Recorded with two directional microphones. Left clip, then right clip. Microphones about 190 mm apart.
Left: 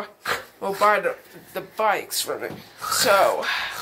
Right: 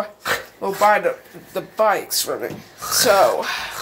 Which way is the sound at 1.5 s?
5° right (ahead or behind).